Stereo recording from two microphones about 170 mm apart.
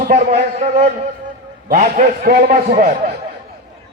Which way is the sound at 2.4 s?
50° right (ahead or behind).